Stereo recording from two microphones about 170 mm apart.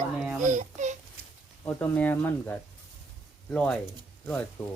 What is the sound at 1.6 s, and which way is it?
Speech, 10° left (ahead or behind).